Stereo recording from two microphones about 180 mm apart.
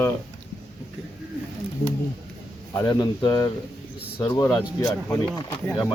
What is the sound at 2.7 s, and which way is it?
Speech, 20° left (ahead or behind).